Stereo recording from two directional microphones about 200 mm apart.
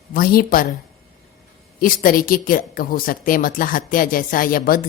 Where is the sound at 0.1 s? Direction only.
45° left (ahead or behind).